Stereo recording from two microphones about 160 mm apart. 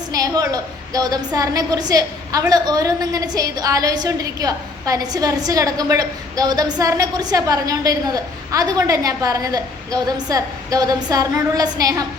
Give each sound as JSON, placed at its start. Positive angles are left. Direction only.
{"t": 0.1, "sound": "a woman's voice", "side_deg": -20}